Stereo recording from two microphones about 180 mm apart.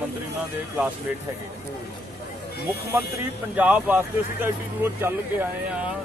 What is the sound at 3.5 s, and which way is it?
Speech, 5° right (ahead or behind).